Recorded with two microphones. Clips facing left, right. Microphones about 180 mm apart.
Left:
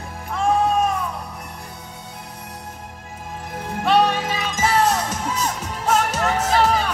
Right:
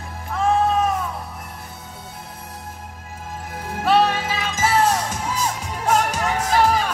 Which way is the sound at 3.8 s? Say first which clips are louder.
Even; 5° right (ahead or behind).